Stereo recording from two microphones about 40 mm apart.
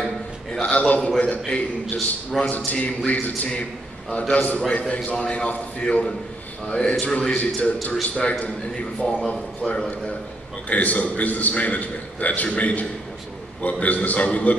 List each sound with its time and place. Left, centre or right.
0.6 s a man's voice: left
2.0 s a man's voice: centre
2.5 s a man's voice: left; by 9.4 s centre
10.7 s a man's voice: left